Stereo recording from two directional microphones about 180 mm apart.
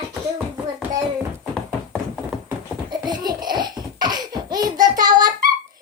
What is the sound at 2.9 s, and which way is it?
Laughter, 20° right (ahead or behind).